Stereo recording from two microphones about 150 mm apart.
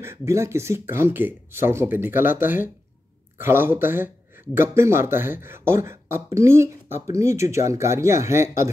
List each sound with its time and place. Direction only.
0.0 s speech: 15° right (ahead or behind)